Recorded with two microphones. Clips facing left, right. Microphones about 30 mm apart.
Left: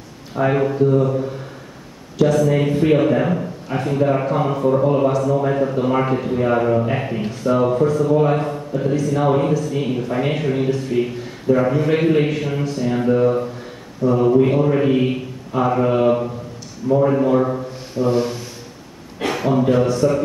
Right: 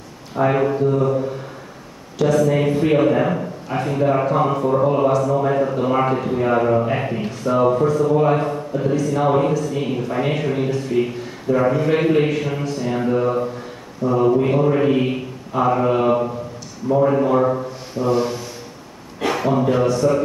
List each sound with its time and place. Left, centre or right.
0.6 s a sound: centre
0.8 s a man's voice: centre
2.3 s a man's voice: centre
14.5 s mantra: centre
15.8 s a man's voice: centre
19.2 s a sound: centre
19.7 s a man's voice: centre